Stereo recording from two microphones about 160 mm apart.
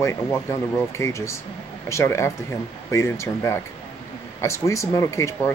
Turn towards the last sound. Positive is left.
turn(degrees=20)  # may be behind; listen again after turning